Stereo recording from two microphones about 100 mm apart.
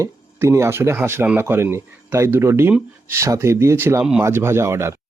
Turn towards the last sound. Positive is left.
turn(degrees=-25)  # may be behind; listen again after turning